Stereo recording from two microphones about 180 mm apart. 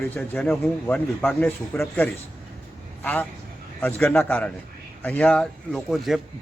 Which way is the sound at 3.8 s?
10° left (ahead or behind).